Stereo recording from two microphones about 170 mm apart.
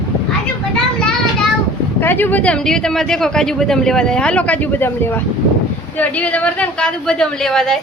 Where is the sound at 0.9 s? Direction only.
5° left (ahead or behind).